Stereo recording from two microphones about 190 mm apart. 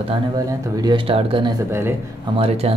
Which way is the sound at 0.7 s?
25° right (ahead or behind).